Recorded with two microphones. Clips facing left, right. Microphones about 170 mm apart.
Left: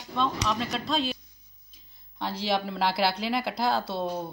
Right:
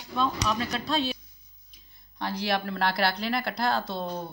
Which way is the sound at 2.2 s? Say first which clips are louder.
Even; centre (ahead or behind).